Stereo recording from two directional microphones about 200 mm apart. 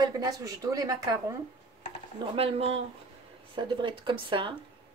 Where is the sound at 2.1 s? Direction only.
30° right (ahead or behind).